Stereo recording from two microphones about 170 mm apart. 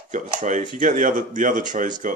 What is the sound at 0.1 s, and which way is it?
Speech, 45° right (ahead or behind).